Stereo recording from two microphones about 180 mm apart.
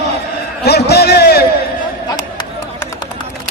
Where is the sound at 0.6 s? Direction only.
65° left (ahead or behind).